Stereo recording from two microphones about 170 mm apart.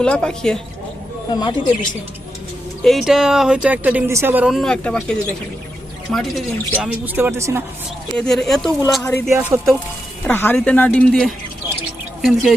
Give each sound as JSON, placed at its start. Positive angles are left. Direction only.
{"t": 0.0, "sound": "speech", "side_deg": 5}
{"t": 1.4, "sound": "speech", "side_deg": 25}
{"t": 2.8, "sound": "speech", "side_deg": 0}
{"t": 7.0, "sound": "speech", "side_deg": -15}
{"t": 8.1, "sound": "speech", "side_deg": 5}
{"t": 9.0, "sound": "speech", "side_deg": 15}
{"t": 9.3, "sound": "speech", "side_deg": -15}
{"t": 10.2, "sound": "speech", "side_deg": 10}